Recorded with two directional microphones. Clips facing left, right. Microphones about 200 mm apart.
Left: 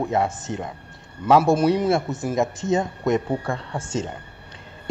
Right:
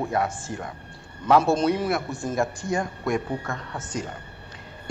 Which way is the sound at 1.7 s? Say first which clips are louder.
Left 4 dB; 20° left (ahead or behind).